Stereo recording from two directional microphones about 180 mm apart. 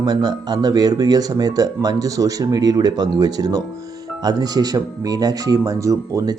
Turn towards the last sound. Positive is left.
turn(degrees=-15)  # may be behind; listen again after turning